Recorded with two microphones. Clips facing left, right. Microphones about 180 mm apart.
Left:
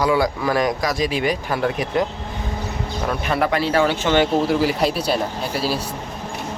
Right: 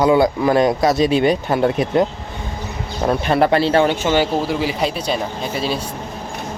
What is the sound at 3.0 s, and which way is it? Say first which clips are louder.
Speech: right 6 dB; 30° right (ahead or behind).